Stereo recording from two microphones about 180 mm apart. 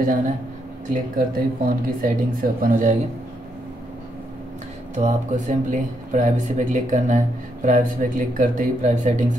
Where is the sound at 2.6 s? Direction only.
45° right (ahead or behind).